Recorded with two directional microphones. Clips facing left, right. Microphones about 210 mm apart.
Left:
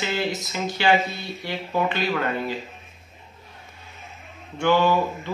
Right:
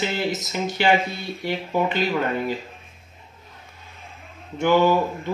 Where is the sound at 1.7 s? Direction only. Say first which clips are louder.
Right 1 dB; 15° right (ahead or behind).